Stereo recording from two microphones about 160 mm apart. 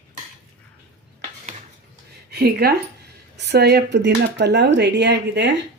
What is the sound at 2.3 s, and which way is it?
Speech, 85° right.